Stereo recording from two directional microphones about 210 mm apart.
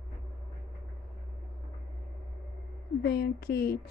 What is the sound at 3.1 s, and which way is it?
Speech, 50° left (ahead or behind).